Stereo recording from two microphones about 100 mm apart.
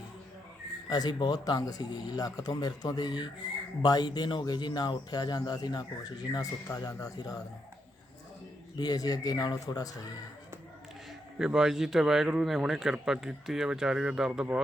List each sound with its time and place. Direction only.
0.9 s speech: 40° left (ahead or behind)
8.8 s speech: 40° left (ahead or behind)
11.3 s speech: 5° right (ahead or behind)